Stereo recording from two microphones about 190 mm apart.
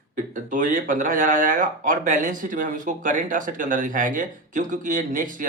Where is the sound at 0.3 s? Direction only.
45° right (ahead or behind).